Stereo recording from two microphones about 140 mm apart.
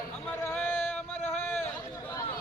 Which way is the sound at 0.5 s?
5° left (ahead or behind).